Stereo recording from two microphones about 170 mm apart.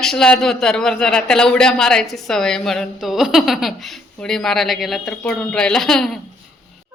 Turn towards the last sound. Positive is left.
turn(degrees=5)  # may be behind; listen again after turning